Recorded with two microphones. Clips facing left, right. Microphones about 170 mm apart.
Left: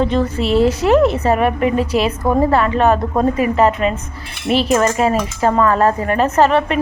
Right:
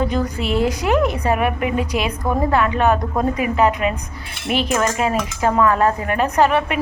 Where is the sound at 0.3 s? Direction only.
35° left (ahead or behind).